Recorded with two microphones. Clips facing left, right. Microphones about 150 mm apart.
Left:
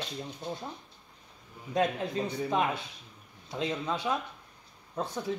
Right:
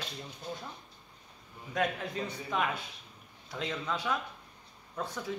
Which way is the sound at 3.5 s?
25° left (ahead or behind).